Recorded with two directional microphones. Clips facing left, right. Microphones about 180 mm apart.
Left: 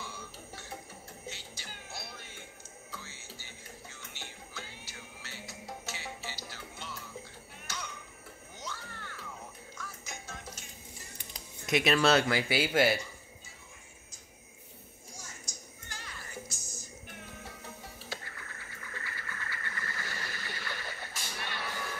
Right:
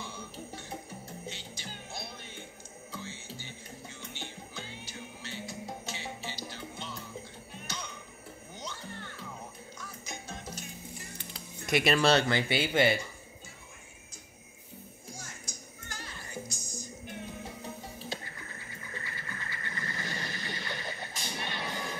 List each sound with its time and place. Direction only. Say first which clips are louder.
0.0 s music: right 3 dB; 20° right (ahead or behind)
11.6 s speech: right 1 dB; centre (ahead or behind)
15.9 s music: right 3 dB; 45° right (ahead or behind)
17.1 s music: right 6 dB; 20° right (ahead or behind)
18.9 s a sound: right 1 dB; 20° right (ahead or behind)